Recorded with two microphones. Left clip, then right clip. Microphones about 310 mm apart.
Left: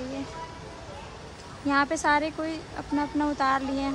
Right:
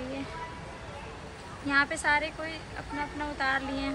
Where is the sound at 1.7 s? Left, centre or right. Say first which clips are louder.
Left 2 dB; centre.